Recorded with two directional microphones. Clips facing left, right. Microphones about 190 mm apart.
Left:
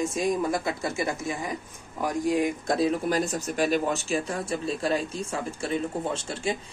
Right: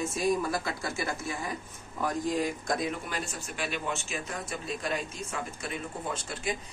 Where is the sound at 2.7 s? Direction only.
35° left (ahead or behind).